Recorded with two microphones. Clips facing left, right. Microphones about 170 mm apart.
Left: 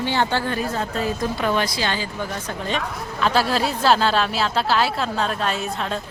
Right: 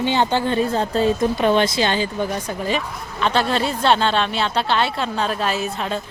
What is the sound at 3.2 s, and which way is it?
Speech, 5° left (ahead or behind).